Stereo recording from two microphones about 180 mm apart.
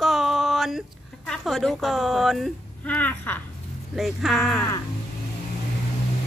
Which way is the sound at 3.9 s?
Centre (ahead or behind).